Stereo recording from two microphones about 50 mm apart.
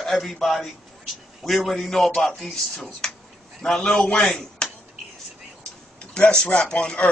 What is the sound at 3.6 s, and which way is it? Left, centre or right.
Speech, centre.